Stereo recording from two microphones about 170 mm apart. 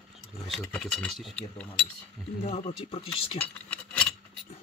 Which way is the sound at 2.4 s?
35° left (ahead or behind).